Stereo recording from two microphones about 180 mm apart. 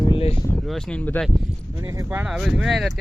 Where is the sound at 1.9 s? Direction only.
15° right (ahead or behind).